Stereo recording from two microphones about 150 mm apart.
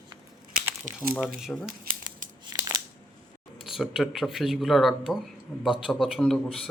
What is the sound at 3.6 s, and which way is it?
Speech, centre (ahead or behind).